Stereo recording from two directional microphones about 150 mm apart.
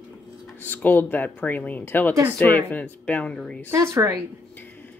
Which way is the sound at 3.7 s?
20° right (ahead or behind).